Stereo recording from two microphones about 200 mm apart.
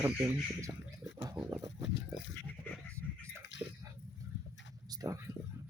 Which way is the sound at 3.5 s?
65° left (ahead or behind).